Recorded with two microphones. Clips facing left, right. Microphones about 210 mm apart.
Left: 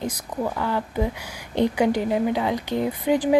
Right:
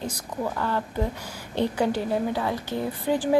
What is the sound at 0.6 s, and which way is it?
A woman's voice, 10° left (ahead or behind).